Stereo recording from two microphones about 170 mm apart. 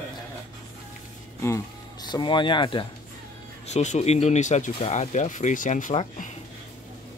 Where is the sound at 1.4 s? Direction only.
15° left (ahead or behind).